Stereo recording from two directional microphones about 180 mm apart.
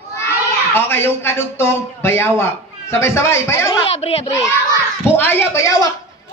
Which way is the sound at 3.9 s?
35° left (ahead or behind).